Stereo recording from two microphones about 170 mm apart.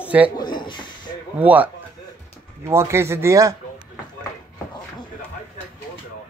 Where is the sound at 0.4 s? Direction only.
25° left (ahead or behind).